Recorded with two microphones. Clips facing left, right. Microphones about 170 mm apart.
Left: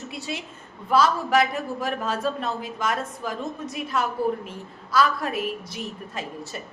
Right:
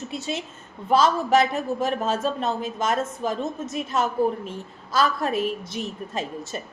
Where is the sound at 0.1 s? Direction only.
25° right (ahead or behind).